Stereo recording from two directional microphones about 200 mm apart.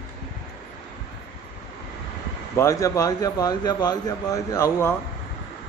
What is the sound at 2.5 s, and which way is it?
Speech, 15° left (ahead or behind).